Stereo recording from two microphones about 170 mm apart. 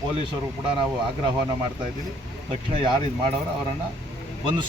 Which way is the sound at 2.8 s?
30° right (ahead or behind).